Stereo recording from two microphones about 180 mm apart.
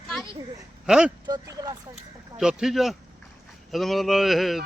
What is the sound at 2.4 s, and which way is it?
A man's voice, 5° right (ahead or behind).